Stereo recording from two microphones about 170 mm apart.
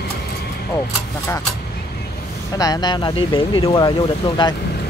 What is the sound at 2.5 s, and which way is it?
Speech, 20° left (ahead or behind).